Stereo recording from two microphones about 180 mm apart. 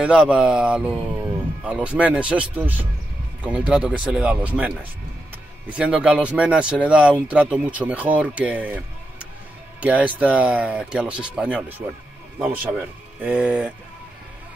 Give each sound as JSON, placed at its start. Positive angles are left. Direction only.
{"t": 0.0, "sound": "speech", "side_deg": -5}